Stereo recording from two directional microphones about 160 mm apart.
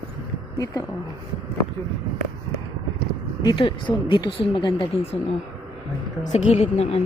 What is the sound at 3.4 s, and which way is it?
A woman's voice, 30° left (ahead or behind).